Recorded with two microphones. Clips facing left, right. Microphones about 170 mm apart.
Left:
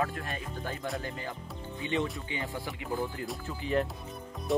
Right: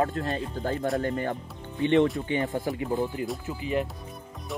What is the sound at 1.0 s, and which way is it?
Speech, 55° right (ahead or behind).